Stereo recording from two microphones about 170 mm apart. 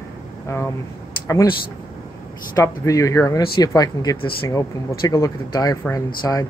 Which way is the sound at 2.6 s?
20° left (ahead or behind).